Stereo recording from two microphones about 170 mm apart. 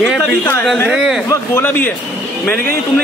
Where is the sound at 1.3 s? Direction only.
15° left (ahead or behind).